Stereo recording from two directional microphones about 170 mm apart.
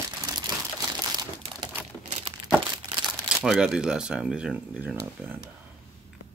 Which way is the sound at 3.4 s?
5° right (ahead or behind).